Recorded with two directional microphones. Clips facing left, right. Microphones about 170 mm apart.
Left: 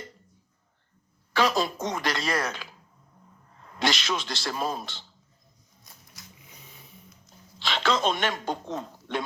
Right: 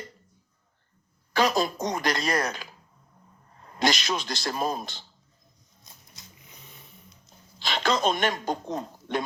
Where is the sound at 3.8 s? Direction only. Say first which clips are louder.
Right 2 dB; 40° right (ahead or behind).